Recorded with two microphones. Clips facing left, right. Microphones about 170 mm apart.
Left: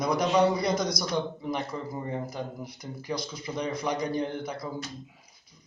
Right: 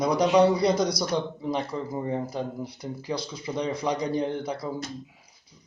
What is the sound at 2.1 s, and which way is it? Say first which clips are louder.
Speech: right 4 dB; 30° right (ahead or behind).